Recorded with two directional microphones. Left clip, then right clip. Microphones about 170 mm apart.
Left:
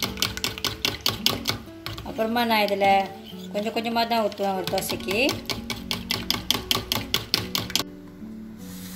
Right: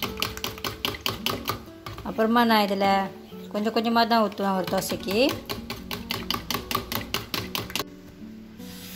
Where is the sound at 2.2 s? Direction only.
45° right (ahead or behind).